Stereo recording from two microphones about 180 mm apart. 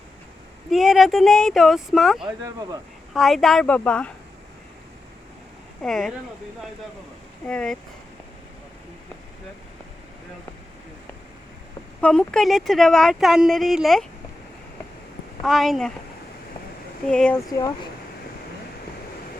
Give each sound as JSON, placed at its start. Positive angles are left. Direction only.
{"t": 0.7, "sound": "speech", "side_deg": 0}
{"t": 2.2, "sound": "speech", "side_deg": -20}
{"t": 3.1, "sound": "speech", "side_deg": 0}
{"t": 5.8, "sound": "speech", "side_deg": 0}
{"t": 7.4, "sound": "speech", "side_deg": 5}
{"t": 11.9, "sound": "speech", "side_deg": 5}
{"t": 15.4, "sound": "speech", "side_deg": 0}
{"t": 17.1, "sound": "speech", "side_deg": 5}
{"t": 17.5, "sound": "speech", "side_deg": 20}